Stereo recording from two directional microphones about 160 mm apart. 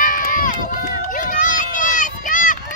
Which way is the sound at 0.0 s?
60° left (ahead or behind).